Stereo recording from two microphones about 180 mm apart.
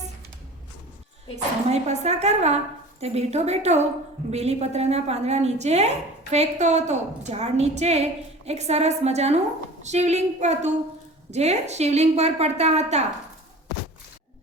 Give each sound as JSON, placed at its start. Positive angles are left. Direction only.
{"t": 1.7, "sound": "a woman's voice", "side_deg": -35}